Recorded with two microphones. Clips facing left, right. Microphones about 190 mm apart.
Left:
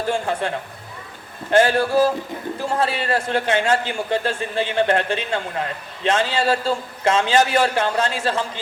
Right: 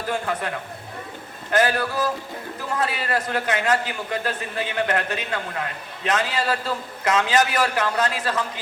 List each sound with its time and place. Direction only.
0.1 s a man's voice: 30° left (ahead or behind)